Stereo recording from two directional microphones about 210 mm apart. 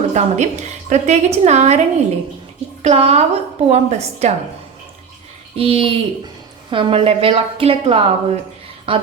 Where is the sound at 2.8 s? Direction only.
30° right (ahead or behind).